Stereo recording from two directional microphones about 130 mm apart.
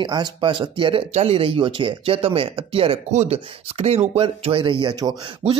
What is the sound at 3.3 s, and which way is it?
Speech, 50° right (ahead or behind).